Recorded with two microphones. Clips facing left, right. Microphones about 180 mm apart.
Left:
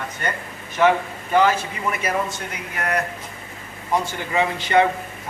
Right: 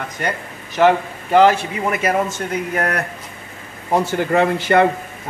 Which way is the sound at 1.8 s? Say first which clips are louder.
Right 5 dB; 50° right (ahead or behind).